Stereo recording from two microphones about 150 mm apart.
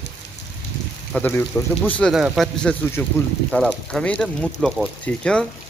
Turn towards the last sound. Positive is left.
turn(degrees=5)  # may be behind; listen again after turning